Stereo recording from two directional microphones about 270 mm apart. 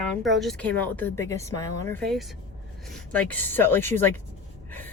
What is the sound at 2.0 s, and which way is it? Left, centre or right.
A woman's voice, centre.